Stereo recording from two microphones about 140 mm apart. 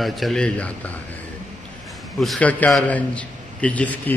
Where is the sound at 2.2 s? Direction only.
5° left (ahead or behind).